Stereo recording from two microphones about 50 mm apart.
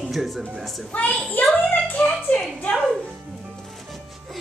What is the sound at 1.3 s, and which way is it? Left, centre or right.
Speech, left.